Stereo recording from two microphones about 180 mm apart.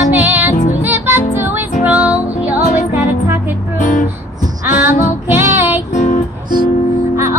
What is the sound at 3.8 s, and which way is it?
Music, 45° left (ahead or behind).